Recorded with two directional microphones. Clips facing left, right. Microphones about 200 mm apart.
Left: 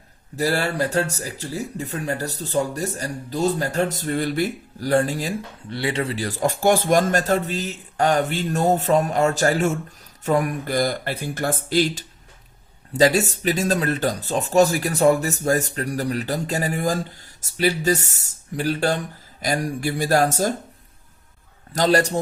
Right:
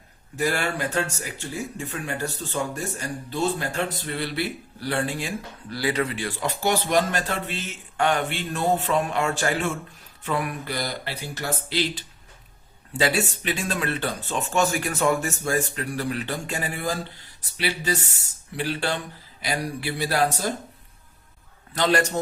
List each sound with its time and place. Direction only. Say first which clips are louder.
0.3 s speech: left 3 dB; 35° left (ahead or behind)
5.6 s speech: even; 25° left (ahead or behind); by 20.5 s 45° left (ahead or behind)
21.7 s speech: left 4 dB; 40° left (ahead or behind)